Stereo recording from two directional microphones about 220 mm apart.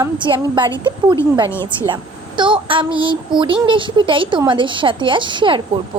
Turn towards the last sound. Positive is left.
turn(degrees=-20)  # may be behind; listen again after turning